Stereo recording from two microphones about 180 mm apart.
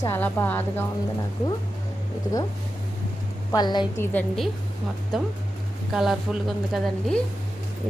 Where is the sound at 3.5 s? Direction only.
25° left (ahead or behind).